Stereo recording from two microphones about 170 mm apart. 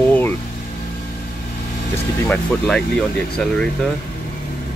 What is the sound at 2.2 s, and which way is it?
Speech, 5° left (ahead or behind).